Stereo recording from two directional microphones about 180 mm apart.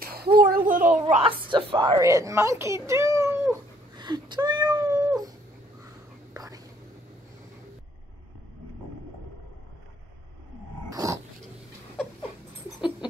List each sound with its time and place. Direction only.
0.0 s a sound: 60° right (ahead or behind)
1.0 s speech: 30° right (ahead or behind)
3.9 s cat: 25° right (ahead or behind)
6.3 s whispering: 20° right (ahead or behind)
10.9 s dog: 20° right (ahead or behind)